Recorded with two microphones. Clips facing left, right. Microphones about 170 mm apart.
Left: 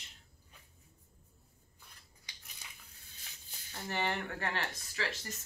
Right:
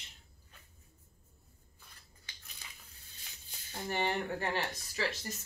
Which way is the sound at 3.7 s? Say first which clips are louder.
Right 2 dB; 15° right (ahead or behind).